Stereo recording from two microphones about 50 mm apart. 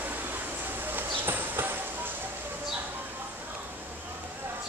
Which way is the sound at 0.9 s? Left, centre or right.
Right.